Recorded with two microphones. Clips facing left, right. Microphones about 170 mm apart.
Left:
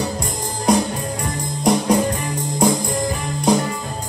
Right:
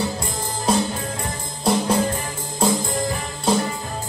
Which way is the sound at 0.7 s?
15° left (ahead or behind).